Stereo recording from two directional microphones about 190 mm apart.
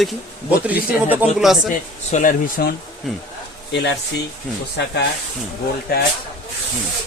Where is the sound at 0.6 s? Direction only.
10° right (ahead or behind).